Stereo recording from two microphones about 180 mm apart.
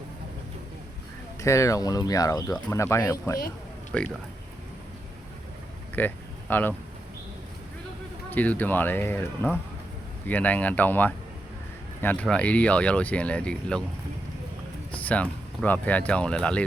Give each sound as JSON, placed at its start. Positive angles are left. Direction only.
{"t": 1.4, "sound": "speech", "side_deg": 15}
{"t": 3.9, "sound": "speech", "side_deg": 5}
{"t": 6.0, "sound": "speech", "side_deg": 10}
{"t": 8.3, "sound": "speech", "side_deg": 10}
{"t": 14.9, "sound": "speech", "side_deg": 5}